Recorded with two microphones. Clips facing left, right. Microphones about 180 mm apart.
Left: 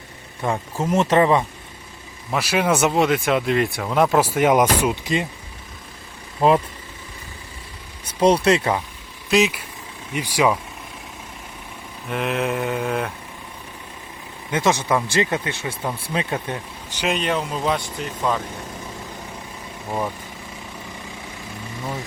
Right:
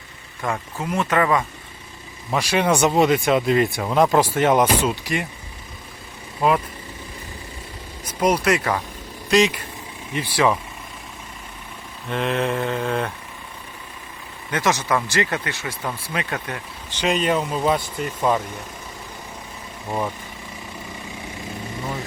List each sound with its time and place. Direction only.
0.4 s speech: 20° left (ahead or behind)
2.3 s speech: 5° left (ahead or behind); by 5.3 s 20° left (ahead or behind)
8.4 s speech: 25° left (ahead or behind)
9.3 s speech: 5° left (ahead or behind)
12.0 s speech: 5° left (ahead or behind)
14.5 s speech: 25° left (ahead or behind); by 18.3 s 5° right (ahead or behind)